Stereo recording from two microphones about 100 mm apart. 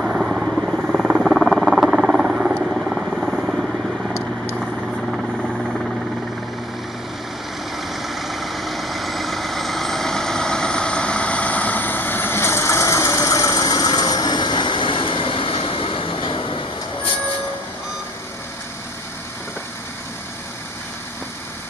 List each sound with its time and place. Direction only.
0.0 s rodents: 5° right (ahead or behind)
5.1 s vehicle: 5° left (ahead or behind)
7.7 s vehicle: centre (ahead or behind); by 17.1 s 60° left (ahead or behind)